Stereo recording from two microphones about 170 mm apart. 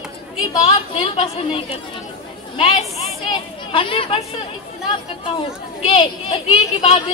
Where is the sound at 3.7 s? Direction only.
30° left (ahead or behind).